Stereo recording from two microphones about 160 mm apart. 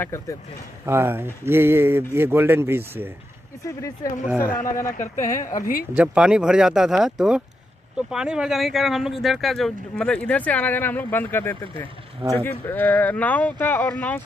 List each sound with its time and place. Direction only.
0.0 s speech: 20° left (ahead or behind)
0.8 s speech: 15° right (ahead or behind)
3.6 s speech: 20° left (ahead or behind)
5.1 s speech: 55° left (ahead or behind)
5.9 s speech: 5° right (ahead or behind); by 11.9 s 10° left (ahead or behind)
12.2 s speech: 30° right (ahead or behind)
12.4 s speech: 10° left (ahead or behind)